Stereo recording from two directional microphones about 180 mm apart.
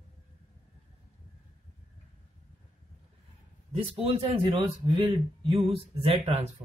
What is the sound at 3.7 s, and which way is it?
Speech, 30° right (ahead or behind).